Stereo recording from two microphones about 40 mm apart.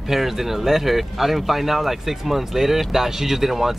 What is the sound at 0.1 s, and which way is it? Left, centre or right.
Speech, centre.